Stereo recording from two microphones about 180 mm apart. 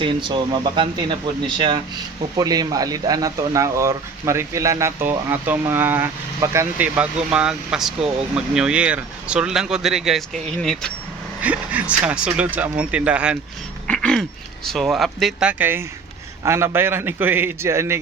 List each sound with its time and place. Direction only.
0.0 s speech: 25° right (ahead or behind); by 13.3 s 5° right (ahead or behind)
13.8 s speech: 5° left (ahead or behind); by 18.0 s 15° right (ahead or behind)